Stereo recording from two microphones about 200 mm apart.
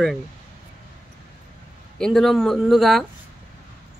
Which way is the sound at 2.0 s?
Centre (ahead or behind).